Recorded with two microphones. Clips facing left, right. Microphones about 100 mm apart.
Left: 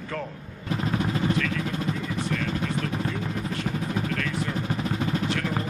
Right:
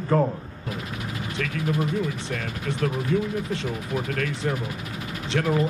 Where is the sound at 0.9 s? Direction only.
35° left (ahead or behind).